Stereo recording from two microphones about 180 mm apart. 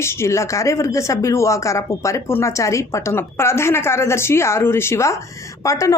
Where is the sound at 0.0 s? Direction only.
15° left (ahead or behind).